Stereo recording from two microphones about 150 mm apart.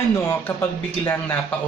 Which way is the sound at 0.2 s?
15° left (ahead or behind).